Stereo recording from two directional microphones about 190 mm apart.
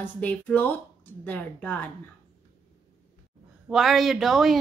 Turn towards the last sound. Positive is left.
turn(degrees=0)  # may be behind; listen again after turning